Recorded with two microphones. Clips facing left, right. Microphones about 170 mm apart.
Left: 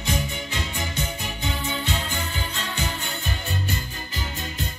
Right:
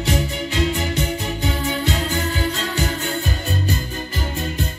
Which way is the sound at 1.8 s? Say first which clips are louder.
Right 7 dB; 40° right (ahead or behind).